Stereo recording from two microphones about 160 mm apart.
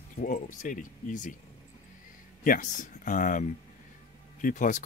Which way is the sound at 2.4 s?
55° left (ahead or behind).